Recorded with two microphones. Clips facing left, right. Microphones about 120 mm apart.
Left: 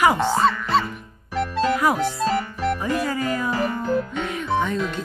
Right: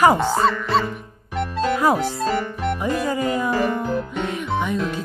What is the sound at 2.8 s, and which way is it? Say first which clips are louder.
Music: right 2 dB; 20° right (ahead or behind).